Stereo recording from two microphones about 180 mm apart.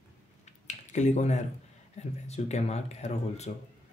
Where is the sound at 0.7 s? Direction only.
40° left (ahead or behind).